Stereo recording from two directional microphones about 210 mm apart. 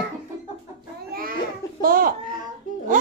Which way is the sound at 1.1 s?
45° right (ahead or behind).